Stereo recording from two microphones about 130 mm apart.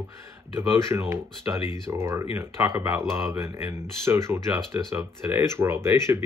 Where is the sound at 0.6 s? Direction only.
20° right (ahead or behind).